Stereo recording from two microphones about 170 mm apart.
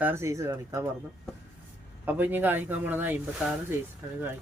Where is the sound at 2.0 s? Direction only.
10° right (ahead or behind).